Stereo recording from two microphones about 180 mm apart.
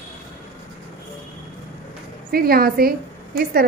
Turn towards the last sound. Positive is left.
turn(degrees=-55)  # may be behind; listen again after turning